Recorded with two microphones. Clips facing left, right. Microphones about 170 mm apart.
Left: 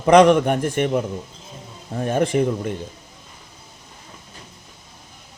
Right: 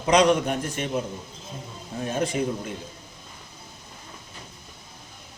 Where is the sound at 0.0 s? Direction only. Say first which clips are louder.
Left 7 dB; 55° left (ahead or behind).